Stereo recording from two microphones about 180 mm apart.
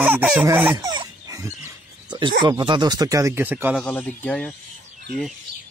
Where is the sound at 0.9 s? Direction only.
20° right (ahead or behind).